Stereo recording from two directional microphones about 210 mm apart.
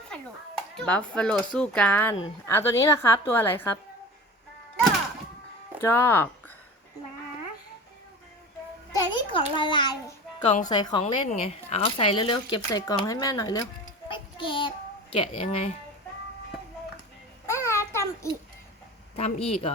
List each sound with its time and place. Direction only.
0.8 s a woman's voice: 5° left (ahead or behind)
5.8 s a woman's voice: 10° left (ahead or behind)
9.0 s a sound: 20° left (ahead or behind)
10.7 s speech: 20° left (ahead or behind)
11.0 s speech: 30° left (ahead or behind)
14.1 s child singing: 25° left (ahead or behind)
15.1 s speech: 25° left (ahead or behind)
17.4 s babbling: 15° left (ahead or behind)
19.1 s speech: 30° left (ahead or behind)